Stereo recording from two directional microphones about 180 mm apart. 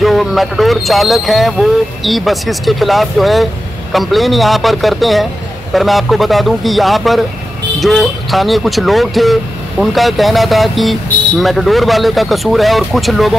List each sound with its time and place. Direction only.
0.0 s speech: centre (ahead or behind)